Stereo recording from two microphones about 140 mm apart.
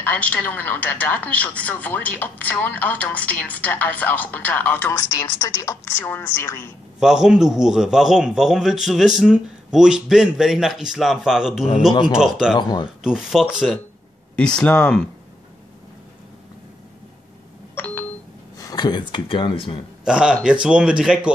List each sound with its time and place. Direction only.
0.0 s speech: 10° left (ahead or behind)
7.0 s a man's voice: 5° right (ahead or behind)
12.5 s speech: 30° left (ahead or behind)
12.8 s a man's voice: 5° right (ahead or behind)
17.7 s a sound: 15° left (ahead or behind)
18.7 s speech: 30° left (ahead or behind)
20.1 s speech: 5° right (ahead or behind)